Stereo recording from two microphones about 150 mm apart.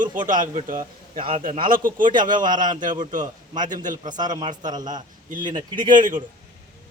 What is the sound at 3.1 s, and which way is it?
Speech, 60° right (ahead or behind).